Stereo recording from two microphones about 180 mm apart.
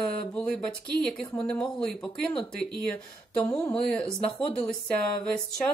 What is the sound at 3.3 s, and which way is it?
A woman's voice, 5° left (ahead or behind).